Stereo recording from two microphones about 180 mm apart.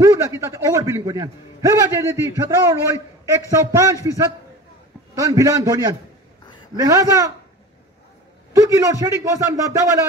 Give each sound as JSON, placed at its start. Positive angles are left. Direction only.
{"t": 0.0, "sound": "a man's voice", "side_deg": -15}
{"t": 8.5, "sound": "a man's voice", "side_deg": -15}